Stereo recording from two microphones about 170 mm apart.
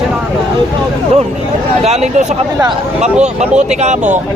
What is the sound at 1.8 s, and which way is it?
Speech, 40° right (ahead or behind).